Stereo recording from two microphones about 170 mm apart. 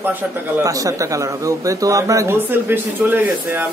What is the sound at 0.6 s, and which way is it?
Speech, 20° right (ahead or behind).